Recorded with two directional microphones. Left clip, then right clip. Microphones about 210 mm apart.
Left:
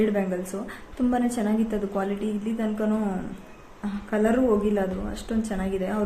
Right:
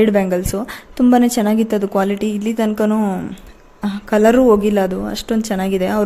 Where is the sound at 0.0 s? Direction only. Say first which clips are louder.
Right 10 dB; 50° right (ahead or behind).